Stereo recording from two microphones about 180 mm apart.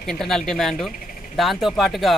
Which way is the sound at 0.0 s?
5° left (ahead or behind).